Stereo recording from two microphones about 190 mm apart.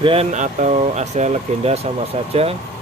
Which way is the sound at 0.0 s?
30° right (ahead or behind).